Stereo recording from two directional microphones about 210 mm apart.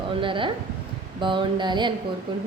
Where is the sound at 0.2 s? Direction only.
25° right (ahead or behind).